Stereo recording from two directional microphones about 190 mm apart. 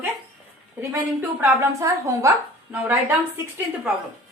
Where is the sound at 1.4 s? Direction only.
15° right (ahead or behind).